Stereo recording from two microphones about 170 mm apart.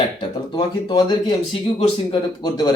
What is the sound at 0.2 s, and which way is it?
Speech, 25° left (ahead or behind).